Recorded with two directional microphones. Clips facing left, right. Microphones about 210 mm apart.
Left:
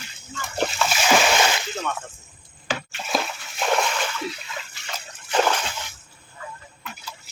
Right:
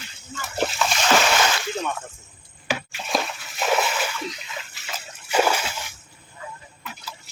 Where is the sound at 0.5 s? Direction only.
Centre (ahead or behind).